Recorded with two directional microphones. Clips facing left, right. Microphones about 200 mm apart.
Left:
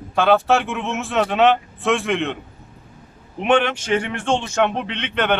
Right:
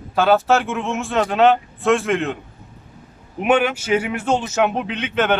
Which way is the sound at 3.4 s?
5° right (ahead or behind).